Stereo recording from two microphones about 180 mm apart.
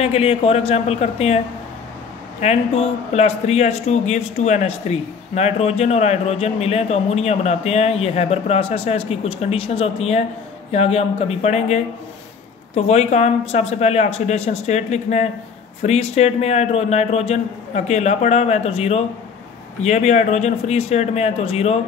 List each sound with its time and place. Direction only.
0.0 s a man's voice: 35° left (ahead or behind)
2.4 s a man's voice: 40° left (ahead or behind)